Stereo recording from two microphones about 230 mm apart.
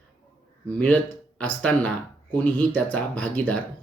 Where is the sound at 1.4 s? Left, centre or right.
Centre.